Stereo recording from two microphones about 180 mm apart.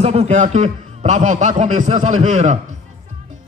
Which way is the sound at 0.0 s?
35° right (ahead or behind).